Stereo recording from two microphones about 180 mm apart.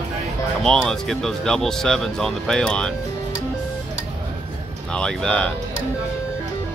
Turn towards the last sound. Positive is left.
turn(degrees=5)  # may be behind; listen again after turning